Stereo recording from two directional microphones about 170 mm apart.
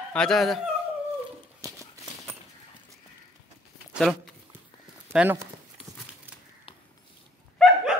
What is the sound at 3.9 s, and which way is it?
Speech, 5° left (ahead or behind).